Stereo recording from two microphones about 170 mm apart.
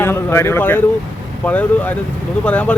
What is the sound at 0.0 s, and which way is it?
Speech, 15° left (ahead or behind).